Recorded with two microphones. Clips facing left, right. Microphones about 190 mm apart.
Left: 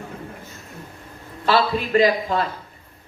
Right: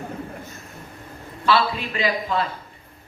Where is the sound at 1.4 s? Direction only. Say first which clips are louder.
Left 1 dB; 40° left (ahead or behind).